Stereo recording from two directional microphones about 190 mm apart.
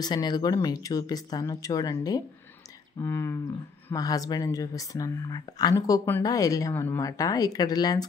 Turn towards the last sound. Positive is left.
turn(degrees=20)  # may be behind; listen again after turning